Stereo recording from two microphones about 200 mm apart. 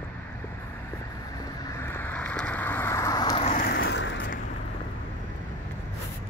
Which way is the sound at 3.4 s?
40° left (ahead or behind).